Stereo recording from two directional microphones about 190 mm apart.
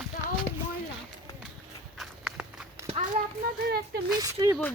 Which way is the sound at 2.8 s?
35° right (ahead or behind).